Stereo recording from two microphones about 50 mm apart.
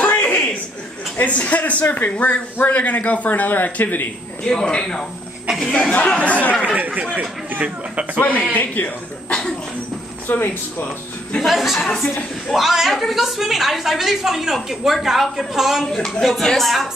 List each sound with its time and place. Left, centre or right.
0.1 s chuckle: left
1.1 s speech: left
4.5 s speech: centre
6.7 s speech: right
8.2 s speech: left
9.3 s speech: centre
10.2 s speech: left
11.4 s a woman's voice: centre
15.8 s a woman's voice: centre